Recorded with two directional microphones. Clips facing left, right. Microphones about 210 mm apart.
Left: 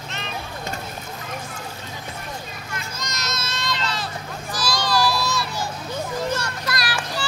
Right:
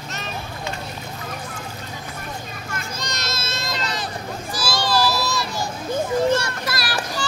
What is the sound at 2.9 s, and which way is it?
Children playing, 30° right (ahead or behind).